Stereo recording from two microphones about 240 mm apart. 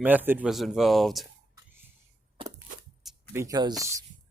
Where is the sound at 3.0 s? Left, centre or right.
Centre.